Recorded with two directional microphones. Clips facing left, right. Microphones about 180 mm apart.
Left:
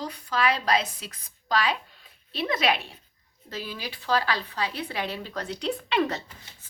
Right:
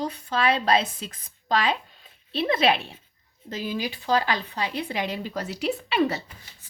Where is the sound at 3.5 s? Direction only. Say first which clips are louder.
Right 6 dB; 20° right (ahead or behind).